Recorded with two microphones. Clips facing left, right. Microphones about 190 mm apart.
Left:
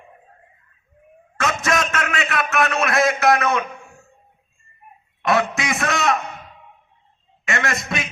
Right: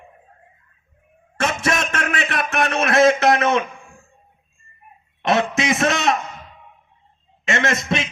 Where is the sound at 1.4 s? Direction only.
25° right (ahead or behind).